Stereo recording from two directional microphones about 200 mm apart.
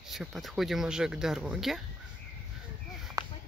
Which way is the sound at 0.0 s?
Centre (ahead or behind).